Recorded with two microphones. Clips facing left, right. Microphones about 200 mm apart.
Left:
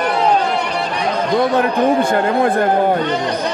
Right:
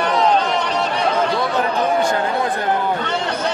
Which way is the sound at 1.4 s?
55° left (ahead or behind).